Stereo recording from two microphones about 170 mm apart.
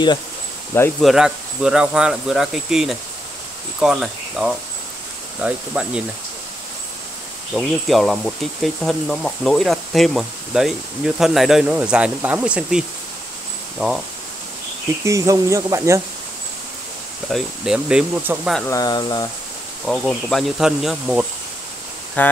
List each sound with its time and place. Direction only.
1.0 s speech: 5° right (ahead or behind)
7.5 s speech: centre (ahead or behind)
15.0 s speech: 20° right (ahead or behind)
17.3 s speech: 5° right (ahead or behind)
18.7 s speech: 20° left (ahead or behind)
19.8 s speech: centre (ahead or behind)
22.2 s speech: 10° left (ahead or behind)